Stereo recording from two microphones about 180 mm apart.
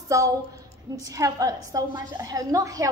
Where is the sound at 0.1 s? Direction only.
15° right (ahead or behind).